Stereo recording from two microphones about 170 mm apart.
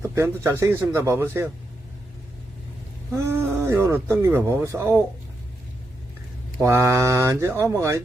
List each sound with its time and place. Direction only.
0.2 s speech: 15° right (ahead or behind)
3.1 s speech: 15° right (ahead or behind)
6.6 s speech: 15° right (ahead or behind)